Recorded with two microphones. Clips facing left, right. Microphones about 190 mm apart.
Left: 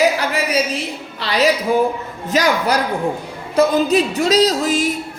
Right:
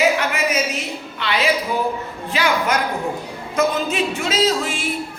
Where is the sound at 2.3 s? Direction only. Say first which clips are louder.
Left 3 dB; 40° left (ahead or behind).